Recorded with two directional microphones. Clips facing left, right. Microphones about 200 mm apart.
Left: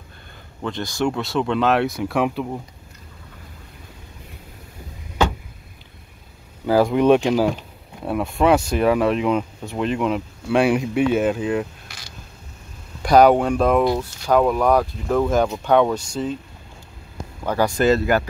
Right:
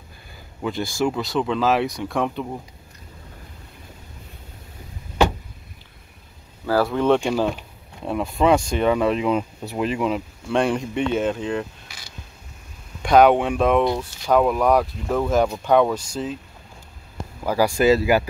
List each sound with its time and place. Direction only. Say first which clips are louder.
0.6 s speech: right 1 dB; 5° right (ahead or behind)
6.6 s speech: left 4 dB; 15° left (ahead or behind)
8.0 s speech: left 1 dB; centre (ahead or behind)
13.0 s speech: left 1 dB; 5° left (ahead or behind)
17.4 s speech: even; 5° right (ahead or behind)